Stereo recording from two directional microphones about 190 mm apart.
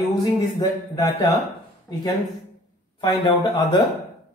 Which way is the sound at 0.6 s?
20° left (ahead or behind).